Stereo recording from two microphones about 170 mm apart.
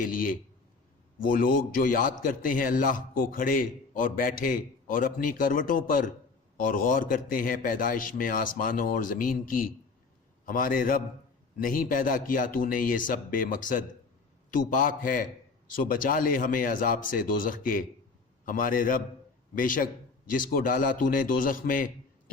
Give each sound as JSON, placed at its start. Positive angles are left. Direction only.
{"t": 0.0, "sound": "a man's voice", "side_deg": 55}